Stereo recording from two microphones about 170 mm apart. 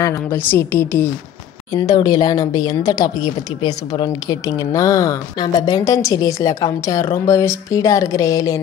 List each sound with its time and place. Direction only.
0.0 s a woman's voice: 15° left (ahead or behind)